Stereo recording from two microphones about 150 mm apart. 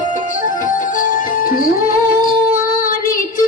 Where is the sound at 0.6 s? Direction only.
65° left (ahead or behind).